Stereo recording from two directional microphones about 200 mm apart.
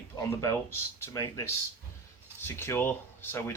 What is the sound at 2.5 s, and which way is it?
Speech, 10° left (ahead or behind).